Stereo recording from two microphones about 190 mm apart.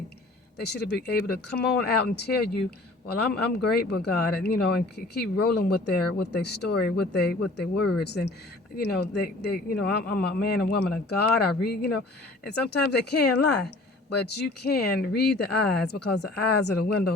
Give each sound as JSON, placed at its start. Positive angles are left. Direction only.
{"t": 0.6, "sound": "speech", "side_deg": 60}